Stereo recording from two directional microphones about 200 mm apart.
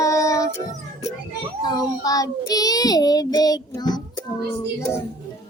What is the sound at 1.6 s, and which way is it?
A child's voice, 20° left (ahead or behind).